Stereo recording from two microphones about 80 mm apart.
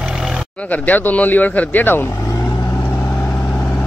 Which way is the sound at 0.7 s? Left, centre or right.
Left.